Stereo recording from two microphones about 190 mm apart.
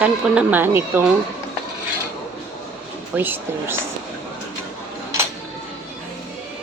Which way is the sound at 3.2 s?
10° right (ahead or behind).